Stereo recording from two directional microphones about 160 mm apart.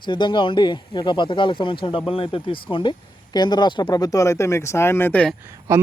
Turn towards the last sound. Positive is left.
turn(degrees=-20)  # may be behind; listen again after turning